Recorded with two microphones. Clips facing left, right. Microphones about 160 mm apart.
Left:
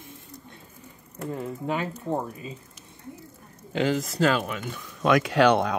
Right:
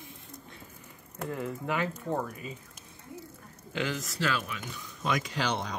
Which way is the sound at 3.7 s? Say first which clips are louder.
Left 8 dB; 30° left (ahead or behind).